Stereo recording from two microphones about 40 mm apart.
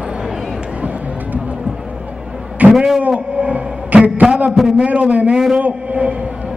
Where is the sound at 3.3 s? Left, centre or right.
Right.